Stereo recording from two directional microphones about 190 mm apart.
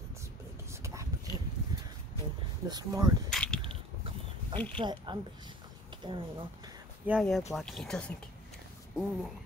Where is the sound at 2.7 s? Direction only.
20° right (ahead or behind).